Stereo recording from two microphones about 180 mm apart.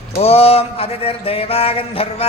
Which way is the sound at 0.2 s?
35° left (ahead or behind).